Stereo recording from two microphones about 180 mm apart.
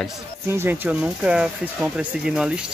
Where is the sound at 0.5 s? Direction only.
10° right (ahead or behind).